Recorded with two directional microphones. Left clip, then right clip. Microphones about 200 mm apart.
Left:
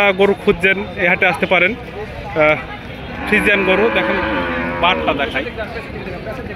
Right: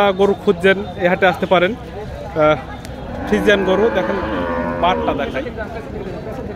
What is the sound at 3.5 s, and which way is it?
Speech, 10° right (ahead or behind).